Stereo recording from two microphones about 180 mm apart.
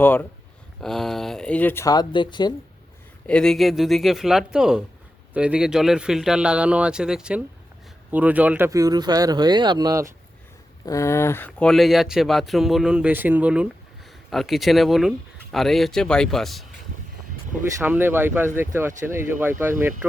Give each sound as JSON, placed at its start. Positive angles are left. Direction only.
{"t": 0.0, "sound": "speech", "side_deg": 10}
{"t": 3.2, "sound": "speech", "side_deg": 5}
{"t": 10.8, "sound": "speech", "side_deg": 15}
{"t": 17.7, "sound": "speech", "side_deg": -10}